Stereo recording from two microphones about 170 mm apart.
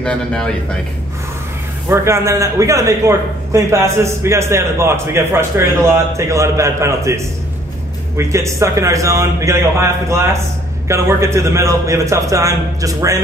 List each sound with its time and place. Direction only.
0.0 s speech: 5° left (ahead or behind)
1.9 s a man's voice: 15° right (ahead or behind)
8.2 s a man's voice: 15° right (ahead or behind)